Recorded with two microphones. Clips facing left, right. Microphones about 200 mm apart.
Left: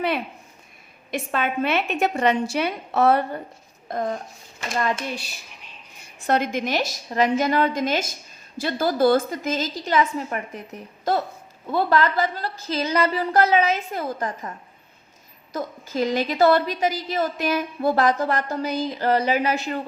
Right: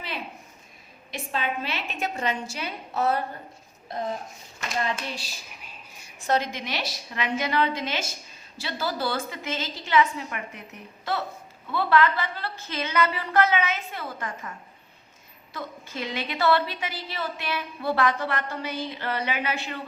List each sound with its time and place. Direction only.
1.1 s a woman's voice: 55° left (ahead or behind)
3.8 s a woman's voice: 50° left (ahead or behind)
15.5 s a woman's voice: 40° left (ahead or behind)